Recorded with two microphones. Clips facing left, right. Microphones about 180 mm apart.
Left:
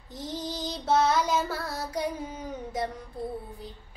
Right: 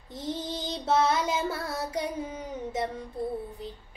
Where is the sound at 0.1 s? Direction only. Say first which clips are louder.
Right 1 dB; 25° right (ahead or behind).